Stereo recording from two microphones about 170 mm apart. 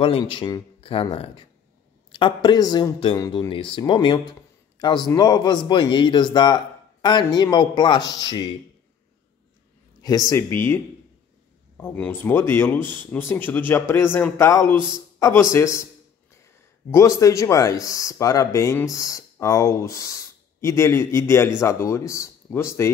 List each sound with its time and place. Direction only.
0.0 s speech: 30° left (ahead or behind)
10.0 s speech: 20° left (ahead or behind)
17.2 s speech: 20° left (ahead or behind)